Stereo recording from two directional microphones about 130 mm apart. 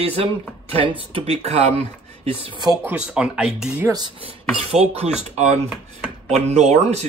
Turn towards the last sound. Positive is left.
turn(degrees=-55)  # may be behind; listen again after turning